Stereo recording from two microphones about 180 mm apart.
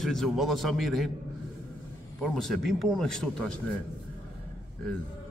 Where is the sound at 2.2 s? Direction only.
Centre (ahead or behind).